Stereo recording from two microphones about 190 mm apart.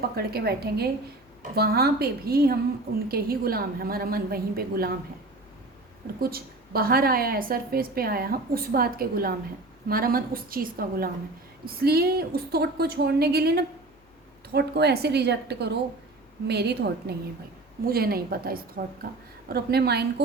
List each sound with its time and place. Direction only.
0.2 s a woman's voice: 55° right (ahead or behind)
6.1 s a woman's voice: 50° right (ahead or behind)